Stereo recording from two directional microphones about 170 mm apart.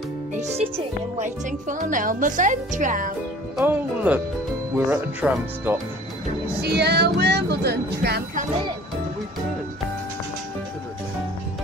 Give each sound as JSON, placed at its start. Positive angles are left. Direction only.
{"t": 0.3, "sound": "speech", "side_deg": -40}
{"t": 3.6, "sound": "speech", "side_deg": -10}
{"t": 6.6, "sound": "speech", "side_deg": -75}